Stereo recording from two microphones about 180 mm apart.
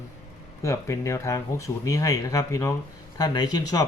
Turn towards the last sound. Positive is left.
turn(degrees=20)  # may be behind; listen again after turning